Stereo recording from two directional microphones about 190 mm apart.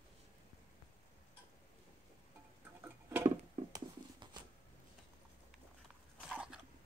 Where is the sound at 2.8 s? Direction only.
15° right (ahead or behind).